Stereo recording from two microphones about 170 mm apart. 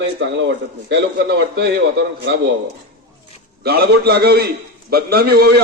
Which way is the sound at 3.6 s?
70° right (ahead or behind).